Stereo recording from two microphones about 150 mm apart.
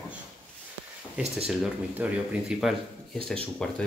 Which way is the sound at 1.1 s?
5° right (ahead or behind).